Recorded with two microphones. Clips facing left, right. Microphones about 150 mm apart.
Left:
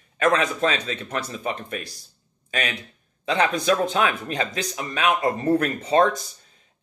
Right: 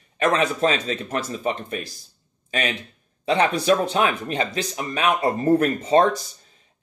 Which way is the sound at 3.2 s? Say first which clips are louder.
Right 2 dB; 30° right (ahead or behind).